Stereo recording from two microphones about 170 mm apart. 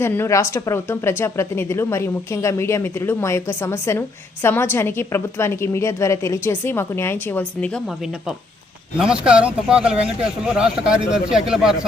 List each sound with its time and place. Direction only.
0.0 s a woman's voice: 15° left (ahead or behind)
9.0 s speech: 5° right (ahead or behind)